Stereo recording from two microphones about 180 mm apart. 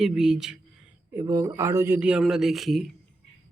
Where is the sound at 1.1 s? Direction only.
20° right (ahead or behind); by 2.9 s centre (ahead or behind).